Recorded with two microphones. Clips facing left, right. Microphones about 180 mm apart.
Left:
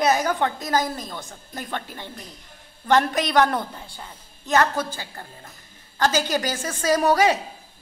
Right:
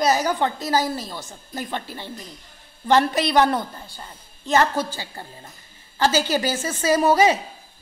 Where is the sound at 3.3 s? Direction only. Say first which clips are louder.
Even; 20° right (ahead or behind).